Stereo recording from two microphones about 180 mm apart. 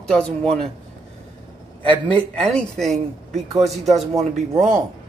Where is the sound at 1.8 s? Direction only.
30° right (ahead or behind).